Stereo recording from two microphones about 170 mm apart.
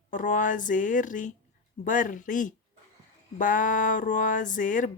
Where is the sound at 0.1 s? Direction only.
50° left (ahead or behind).